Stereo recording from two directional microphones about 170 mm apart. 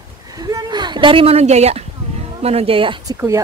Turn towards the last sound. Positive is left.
turn(degrees=-30)  # may be behind; listen again after turning